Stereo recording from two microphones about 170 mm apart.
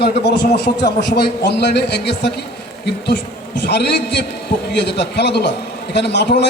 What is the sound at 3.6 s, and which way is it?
A man's voice, 80° left.